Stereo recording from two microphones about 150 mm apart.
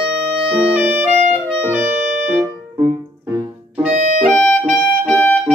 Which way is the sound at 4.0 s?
50° right (ahead or behind).